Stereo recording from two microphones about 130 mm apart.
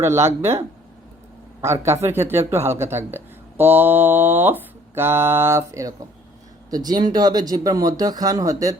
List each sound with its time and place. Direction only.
0.0 s speech: 20° right (ahead or behind)
1.6 s speech: 20° right (ahead or behind)